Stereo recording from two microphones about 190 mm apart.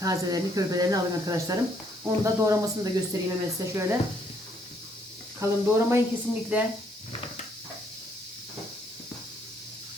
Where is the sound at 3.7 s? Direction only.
15° right (ahead or behind).